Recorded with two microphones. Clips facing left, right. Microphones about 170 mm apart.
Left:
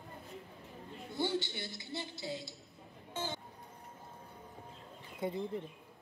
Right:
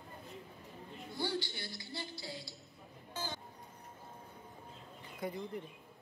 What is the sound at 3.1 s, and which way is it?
Music, 25° left (ahead or behind).